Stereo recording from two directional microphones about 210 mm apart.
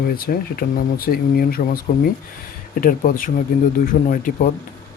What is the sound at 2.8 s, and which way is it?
Speech, 40° left (ahead or behind).